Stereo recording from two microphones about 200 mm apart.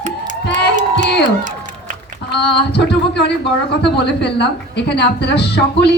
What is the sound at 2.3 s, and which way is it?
Speech, 55° left (ahead or behind).